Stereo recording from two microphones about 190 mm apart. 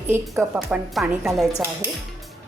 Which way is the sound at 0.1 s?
5° right (ahead or behind).